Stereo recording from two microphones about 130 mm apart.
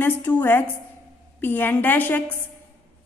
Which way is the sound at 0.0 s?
15° left (ahead or behind).